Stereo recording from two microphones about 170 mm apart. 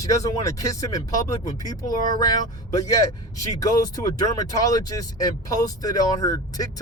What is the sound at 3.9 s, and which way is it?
Speech, 20° left (ahead or behind).